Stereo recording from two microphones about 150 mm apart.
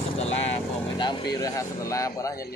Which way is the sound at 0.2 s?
45° left (ahead or behind).